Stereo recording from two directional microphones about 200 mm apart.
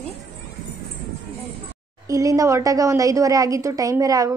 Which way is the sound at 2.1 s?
15° right (ahead or behind).